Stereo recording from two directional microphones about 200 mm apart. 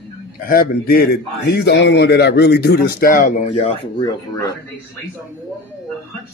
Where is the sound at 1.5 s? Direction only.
60° left (ahead or behind); by 4.0 s 30° left (ahead or behind).